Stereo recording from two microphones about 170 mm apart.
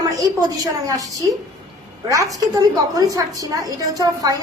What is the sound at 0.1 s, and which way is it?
A woman's voice, 20° right (ahead or behind).